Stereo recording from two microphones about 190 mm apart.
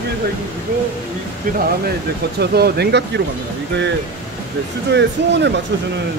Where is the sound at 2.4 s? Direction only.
60° right (ahead or behind).